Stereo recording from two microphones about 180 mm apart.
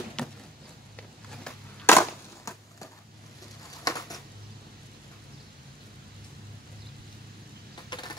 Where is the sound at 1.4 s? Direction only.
10° left (ahead or behind).